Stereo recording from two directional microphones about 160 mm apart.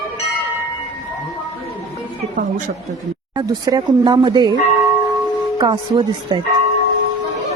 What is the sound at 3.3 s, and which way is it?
Speech, 25° right (ahead or behind).